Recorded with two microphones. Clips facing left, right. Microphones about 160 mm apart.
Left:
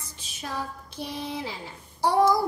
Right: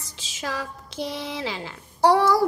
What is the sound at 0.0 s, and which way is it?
Speech, 90° right.